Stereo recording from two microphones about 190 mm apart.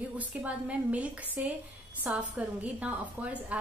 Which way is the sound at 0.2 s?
5° right (ahead or behind).